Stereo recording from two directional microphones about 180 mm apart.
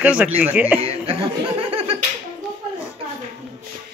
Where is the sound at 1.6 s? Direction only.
30° right (ahead or behind).